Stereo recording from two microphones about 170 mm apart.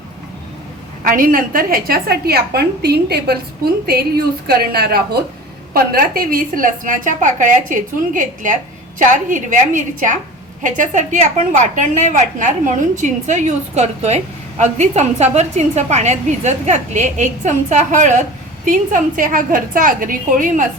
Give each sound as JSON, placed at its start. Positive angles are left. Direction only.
{"t": 1.0, "sound": "a woman's voice", "side_deg": -55}